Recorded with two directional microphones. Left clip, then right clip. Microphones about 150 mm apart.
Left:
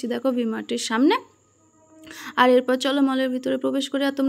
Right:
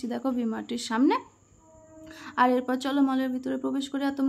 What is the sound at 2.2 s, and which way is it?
A woman's voice, 25° left (ahead or behind).